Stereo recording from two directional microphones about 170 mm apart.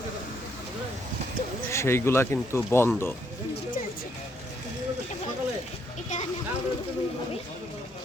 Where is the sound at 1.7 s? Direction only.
15° left (ahead or behind).